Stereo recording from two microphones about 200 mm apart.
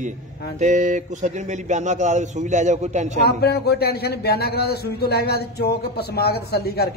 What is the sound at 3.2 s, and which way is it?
Speech, 55° left (ahead or behind).